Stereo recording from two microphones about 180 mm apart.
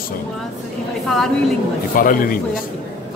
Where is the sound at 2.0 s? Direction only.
50° left (ahead or behind).